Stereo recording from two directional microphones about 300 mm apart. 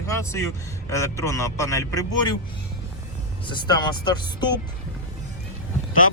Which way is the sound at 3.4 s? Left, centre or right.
Centre.